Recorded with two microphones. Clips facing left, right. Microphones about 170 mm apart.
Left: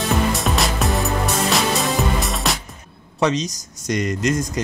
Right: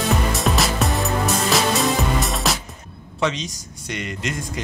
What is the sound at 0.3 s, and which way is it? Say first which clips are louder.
Music: even; centre (ahead or behind).